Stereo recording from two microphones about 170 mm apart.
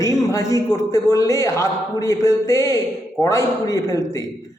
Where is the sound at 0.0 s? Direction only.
20° left (ahead or behind).